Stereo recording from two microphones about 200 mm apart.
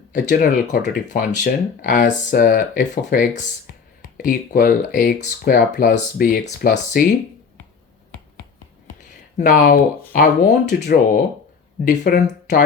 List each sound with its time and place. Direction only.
0.1 s speech: 40° left (ahead or behind)
9.4 s speech: 45° left (ahead or behind)